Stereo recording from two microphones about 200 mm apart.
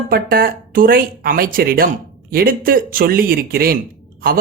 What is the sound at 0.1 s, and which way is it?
Speech, 45° right (ahead or behind).